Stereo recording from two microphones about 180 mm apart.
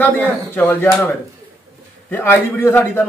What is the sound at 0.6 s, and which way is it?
A man's voice, 10° left (ahead or behind).